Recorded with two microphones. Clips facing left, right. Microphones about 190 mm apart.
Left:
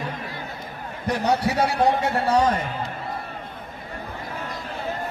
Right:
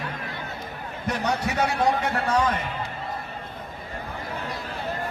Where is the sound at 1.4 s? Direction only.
35° left (ahead or behind).